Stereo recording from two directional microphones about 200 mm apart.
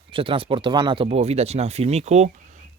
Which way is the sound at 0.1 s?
25° right (ahead or behind).